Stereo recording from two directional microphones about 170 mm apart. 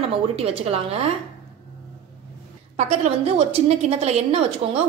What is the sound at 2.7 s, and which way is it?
A woman's voice, 40° right (ahead or behind).